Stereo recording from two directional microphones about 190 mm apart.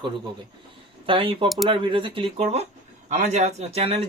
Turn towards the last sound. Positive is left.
turn(degrees=-30)  # may be behind; listen again after turning